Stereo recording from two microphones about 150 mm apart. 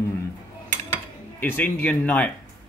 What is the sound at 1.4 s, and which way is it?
Speech, 15° left (ahead or behind).